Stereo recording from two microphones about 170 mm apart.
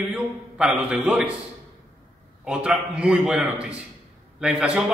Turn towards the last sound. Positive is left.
turn(degrees=-5)  # may be behind; listen again after turning